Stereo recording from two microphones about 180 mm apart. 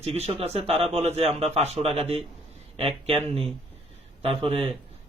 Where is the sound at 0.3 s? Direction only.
35° right (ahead or behind).